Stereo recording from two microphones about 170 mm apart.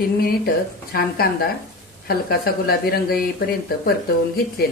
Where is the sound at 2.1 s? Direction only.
65° left (ahead or behind).